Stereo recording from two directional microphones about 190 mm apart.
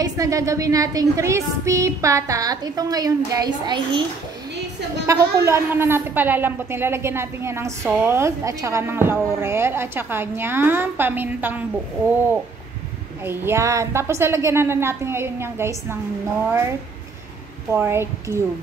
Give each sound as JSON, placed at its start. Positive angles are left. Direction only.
{"t": 0.0, "sound": "speech", "side_deg": -15}
{"t": 5.0, "sound": "speech", "side_deg": -15}
{"t": 13.2, "sound": "speech", "side_deg": -10}
{"t": 17.7, "sound": "speech", "side_deg": -15}